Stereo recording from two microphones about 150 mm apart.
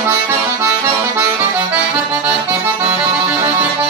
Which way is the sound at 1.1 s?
10° right (ahead or behind).